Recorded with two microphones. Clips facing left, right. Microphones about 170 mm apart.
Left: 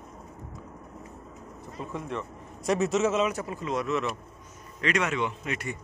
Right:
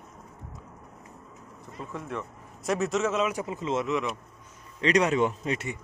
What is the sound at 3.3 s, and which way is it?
Speech, 20° right (ahead or behind).